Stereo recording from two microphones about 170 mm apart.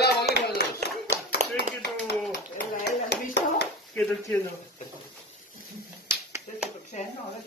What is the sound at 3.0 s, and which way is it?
Clapping, 80° left.